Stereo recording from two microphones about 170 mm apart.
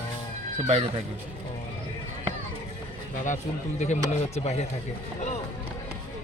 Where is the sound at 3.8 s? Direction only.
45° left (ahead or behind).